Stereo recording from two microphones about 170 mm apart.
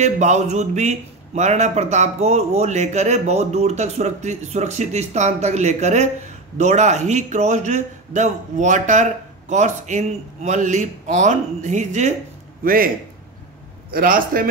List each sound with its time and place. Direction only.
0.0 s a man's voice: 45° right (ahead or behind)
12.6 s a man's voice: 55° right (ahead or behind)
13.9 s a man's voice: 55° right (ahead or behind)